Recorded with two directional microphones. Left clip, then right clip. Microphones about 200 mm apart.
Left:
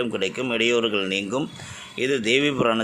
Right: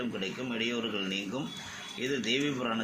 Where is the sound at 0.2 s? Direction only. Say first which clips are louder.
Left 11 dB; 60° left (ahead or behind).